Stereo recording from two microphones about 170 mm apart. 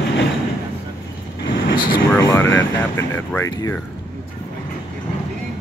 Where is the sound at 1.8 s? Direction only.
25° left (ahead or behind).